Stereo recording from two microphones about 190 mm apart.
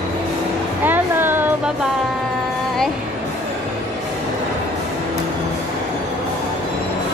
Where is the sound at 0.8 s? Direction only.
10° right (ahead or behind).